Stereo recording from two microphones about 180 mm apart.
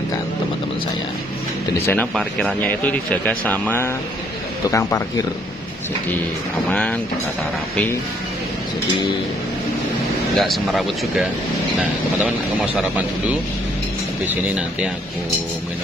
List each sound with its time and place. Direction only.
1.9 s speech: 5° left (ahead or behind)
6.7 s speech: 5° left (ahead or behind)
10.3 s speech: centre (ahead or behind)
12.7 s speech: 10° right (ahead or behind)